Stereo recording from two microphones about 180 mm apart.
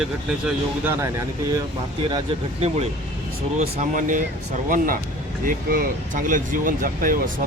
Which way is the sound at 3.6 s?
45° right (ahead or behind).